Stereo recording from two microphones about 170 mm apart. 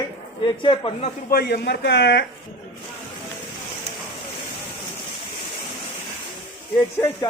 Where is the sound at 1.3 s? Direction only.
70° left (ahead or behind); by 2.2 s 85° left.